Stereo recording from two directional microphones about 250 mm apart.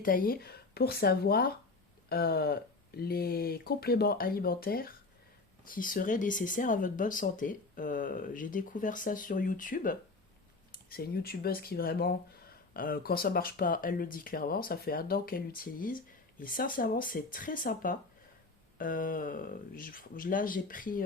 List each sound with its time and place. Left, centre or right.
0.0 s speech: left